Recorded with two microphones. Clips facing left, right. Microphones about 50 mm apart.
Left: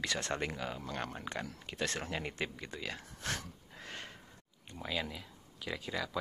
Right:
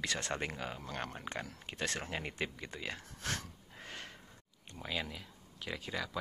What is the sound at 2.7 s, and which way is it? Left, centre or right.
Speech, centre.